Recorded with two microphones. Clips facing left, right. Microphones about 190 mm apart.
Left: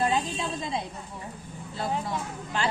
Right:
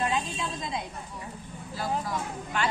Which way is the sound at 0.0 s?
30° left (ahead or behind).